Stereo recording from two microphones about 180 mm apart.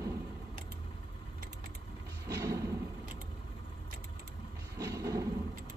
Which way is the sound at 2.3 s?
15° right (ahead or behind).